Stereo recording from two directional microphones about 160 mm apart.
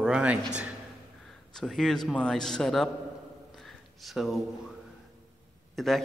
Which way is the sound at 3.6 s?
Centre (ahead or behind).